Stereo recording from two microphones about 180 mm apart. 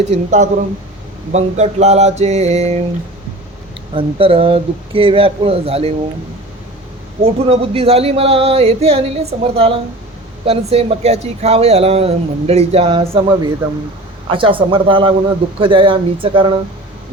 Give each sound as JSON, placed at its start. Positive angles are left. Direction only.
{"t": 0.1, "sound": "speech", "side_deg": -40}
{"t": 3.9, "sound": "speech", "side_deg": -30}
{"t": 7.2, "sound": "speech", "side_deg": -30}